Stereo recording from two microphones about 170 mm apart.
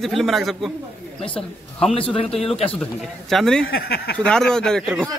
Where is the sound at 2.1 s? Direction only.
35° left (ahead or behind).